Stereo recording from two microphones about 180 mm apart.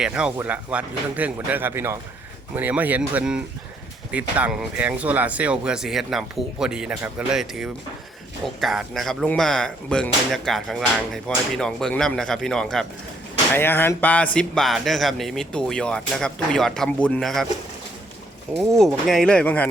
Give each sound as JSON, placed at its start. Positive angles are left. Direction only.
{"t": 0.0, "sound": "speech", "side_deg": -5}
{"t": 18.6, "sound": "speech", "side_deg": 0}